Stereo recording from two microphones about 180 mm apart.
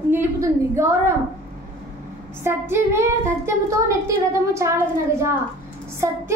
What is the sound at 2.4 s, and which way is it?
A woman's voice, 15° right (ahead or behind).